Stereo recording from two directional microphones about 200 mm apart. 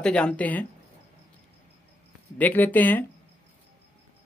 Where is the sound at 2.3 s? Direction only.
10° left (ahead or behind).